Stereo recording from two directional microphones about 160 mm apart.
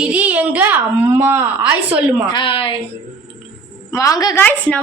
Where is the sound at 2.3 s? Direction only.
35° left (ahead or behind).